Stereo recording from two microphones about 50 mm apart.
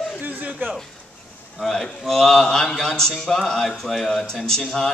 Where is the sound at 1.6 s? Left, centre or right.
Centre.